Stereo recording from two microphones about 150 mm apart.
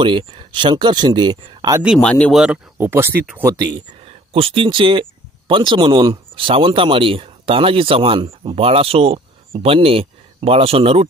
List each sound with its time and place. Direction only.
0.0 s speech: 35° right (ahead or behind)
2.0 s speech: 10° left (ahead or behind)
2.4 s speech: 10° right (ahead or behind)
3.6 s speech: 35° right (ahead or behind)